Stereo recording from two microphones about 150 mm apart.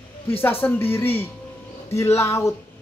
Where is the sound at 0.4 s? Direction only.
15° left (ahead or behind).